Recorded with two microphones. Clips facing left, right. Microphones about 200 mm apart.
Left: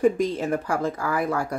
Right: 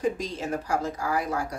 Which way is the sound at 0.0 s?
55° left (ahead or behind).